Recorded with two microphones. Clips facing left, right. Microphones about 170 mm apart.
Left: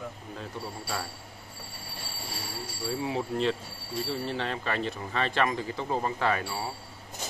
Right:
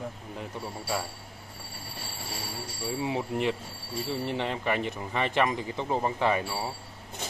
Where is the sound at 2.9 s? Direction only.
20° right (ahead or behind).